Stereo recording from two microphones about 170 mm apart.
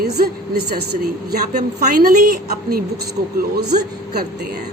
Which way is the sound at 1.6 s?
50° right (ahead or behind).